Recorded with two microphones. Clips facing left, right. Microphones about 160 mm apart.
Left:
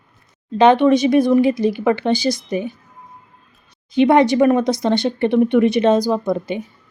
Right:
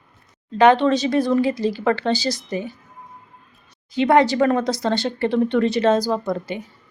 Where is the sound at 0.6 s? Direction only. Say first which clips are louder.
Left 3 dB; 15° left (ahead or behind).